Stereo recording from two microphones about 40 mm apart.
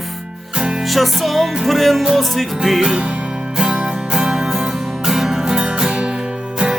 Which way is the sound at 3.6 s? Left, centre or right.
Right.